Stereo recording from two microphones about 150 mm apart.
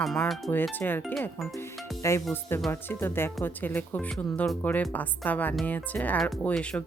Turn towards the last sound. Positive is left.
turn(degrees=10)  # may be behind; listen again after turning